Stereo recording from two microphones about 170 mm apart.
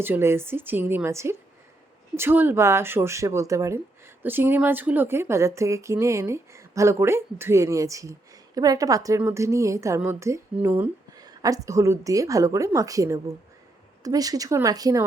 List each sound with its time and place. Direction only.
0.0 s a woman's voice: 15° right (ahead or behind)